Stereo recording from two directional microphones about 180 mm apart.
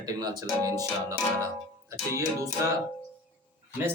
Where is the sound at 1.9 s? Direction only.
15° right (ahead or behind).